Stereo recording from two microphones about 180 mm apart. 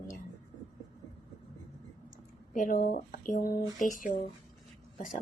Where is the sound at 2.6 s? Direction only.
50° left (ahead or behind).